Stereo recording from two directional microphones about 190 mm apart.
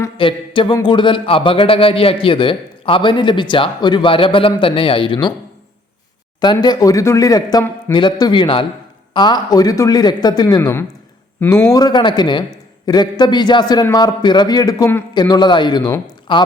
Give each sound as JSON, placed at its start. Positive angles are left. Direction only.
{"t": 0.2, "sound": "speech", "side_deg": 25}
{"t": 6.4, "sound": "speech", "side_deg": 20}